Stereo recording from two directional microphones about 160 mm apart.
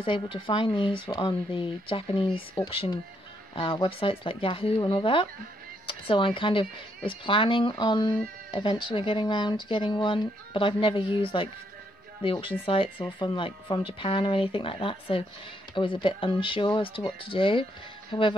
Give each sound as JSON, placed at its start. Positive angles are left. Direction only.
{"t": 0.0, "sound": "speech", "side_deg": 30}